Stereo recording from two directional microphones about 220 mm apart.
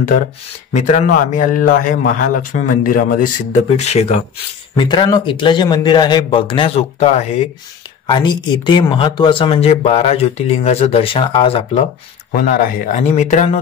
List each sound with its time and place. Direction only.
0.7 s a man's voice: 35° left (ahead or behind)
3.7 s speech: 30° left (ahead or behind)
4.7 s speech: 20° left (ahead or behind)
12.4 s a man's voice: 40° left (ahead or behind)